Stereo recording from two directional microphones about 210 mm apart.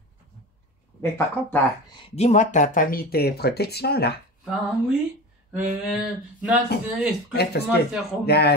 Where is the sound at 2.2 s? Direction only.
35° left (ahead or behind); by 4.1 s 50° left (ahead or behind).